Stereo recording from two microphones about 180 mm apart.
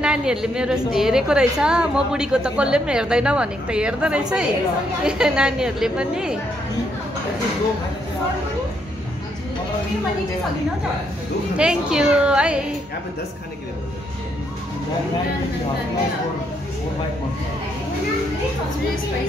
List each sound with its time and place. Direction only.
0.0 s a woman's voice: 5° right (ahead or behind)
11.5 s a woman's voice: 5° right (ahead or behind)